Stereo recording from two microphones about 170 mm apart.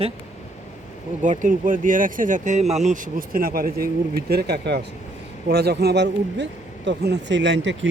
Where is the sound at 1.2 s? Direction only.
45° right (ahead or behind).